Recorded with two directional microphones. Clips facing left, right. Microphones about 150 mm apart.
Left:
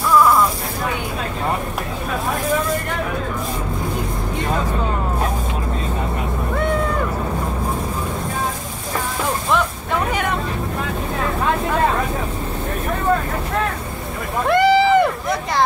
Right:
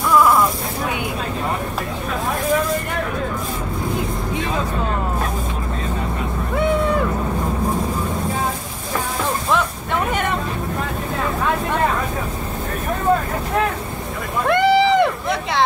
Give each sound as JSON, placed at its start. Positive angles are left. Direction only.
{"t": 14.5, "sound": "boat", "side_deg": 0}